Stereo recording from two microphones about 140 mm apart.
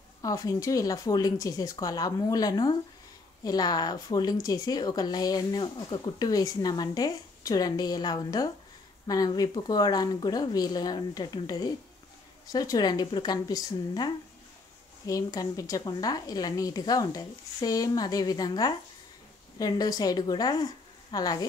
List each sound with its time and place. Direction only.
0.2 s speech: 25° left (ahead or behind)